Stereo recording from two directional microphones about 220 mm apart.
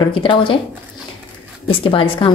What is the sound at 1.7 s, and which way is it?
Speech, 25° left (ahead or behind).